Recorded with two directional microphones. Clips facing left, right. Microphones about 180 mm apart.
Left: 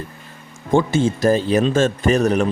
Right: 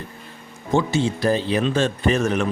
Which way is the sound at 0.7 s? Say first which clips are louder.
Left 3 dB; 50° left (ahead or behind).